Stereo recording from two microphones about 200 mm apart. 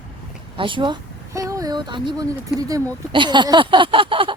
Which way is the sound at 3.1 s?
25° right (ahead or behind).